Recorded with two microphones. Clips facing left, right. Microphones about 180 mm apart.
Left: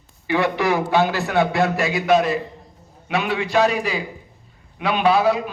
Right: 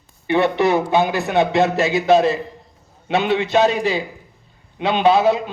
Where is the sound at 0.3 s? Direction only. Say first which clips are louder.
Right 3 dB; 25° right (ahead or behind).